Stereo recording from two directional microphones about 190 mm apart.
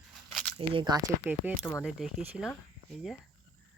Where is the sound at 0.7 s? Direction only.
25° right (ahead or behind).